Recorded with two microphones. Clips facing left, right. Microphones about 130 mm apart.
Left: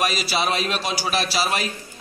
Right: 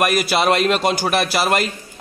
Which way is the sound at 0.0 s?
55° right (ahead or behind).